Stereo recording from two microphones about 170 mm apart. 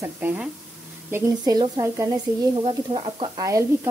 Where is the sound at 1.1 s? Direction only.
20° right (ahead or behind).